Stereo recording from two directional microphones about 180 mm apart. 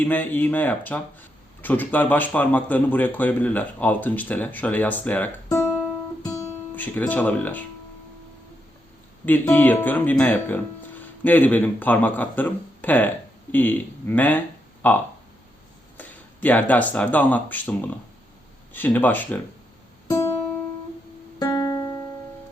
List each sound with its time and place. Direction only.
0.0 s speech: 10° left (ahead or behind)
6.7 s speech: 10° left (ahead or behind)
9.2 s speech: 10° left (ahead or behind)
16.0 s speech: 10° left (ahead or behind)
21.3 s music: 20° left (ahead or behind)